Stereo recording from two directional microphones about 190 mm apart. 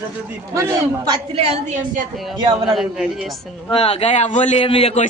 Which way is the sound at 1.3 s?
30° right (ahead or behind).